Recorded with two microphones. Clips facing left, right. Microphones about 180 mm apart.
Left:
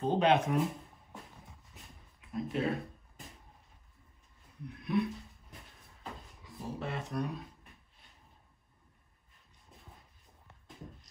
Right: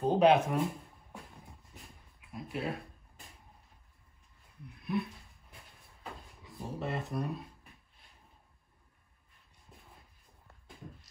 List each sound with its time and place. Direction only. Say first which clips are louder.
0.0 s speech: right 3 dB; 5° right (ahead or behind)
1.1 s a sound: right 1 dB; centre (ahead or behind)
4.6 s speech: left 3 dB; centre (ahead or behind)
6.4 s speech: right 1 dB; centre (ahead or behind)